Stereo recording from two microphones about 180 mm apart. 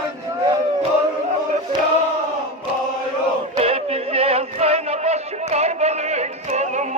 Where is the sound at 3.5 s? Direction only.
35° right (ahead or behind).